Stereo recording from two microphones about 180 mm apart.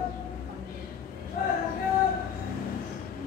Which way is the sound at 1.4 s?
55° left (ahead or behind).